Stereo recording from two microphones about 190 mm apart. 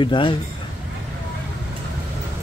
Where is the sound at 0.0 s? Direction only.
25° left (ahead or behind).